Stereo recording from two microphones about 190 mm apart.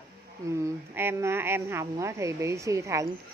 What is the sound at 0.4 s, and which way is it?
A woman's voice, 15° right (ahead or behind).